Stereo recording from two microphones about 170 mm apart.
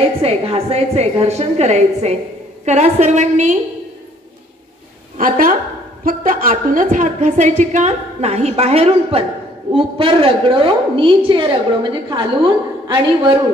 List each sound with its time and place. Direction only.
0.2 s a woman's voice: 35° right (ahead or behind)
5.1 s a woman's voice: 55° right (ahead or behind); by 13.4 s 25° right (ahead or behind)